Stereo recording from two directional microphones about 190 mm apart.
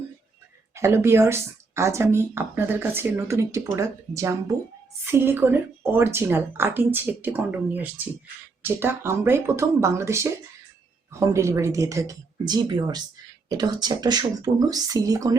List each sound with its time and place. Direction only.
0.7 s speech: 15° right (ahead or behind)